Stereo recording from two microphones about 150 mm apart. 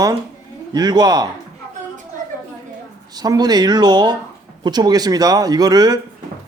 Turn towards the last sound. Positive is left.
turn(degrees=-25)  # may be behind; listen again after turning